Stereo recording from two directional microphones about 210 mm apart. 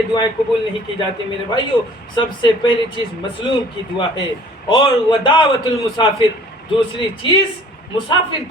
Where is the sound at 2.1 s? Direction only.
20° left (ahead or behind).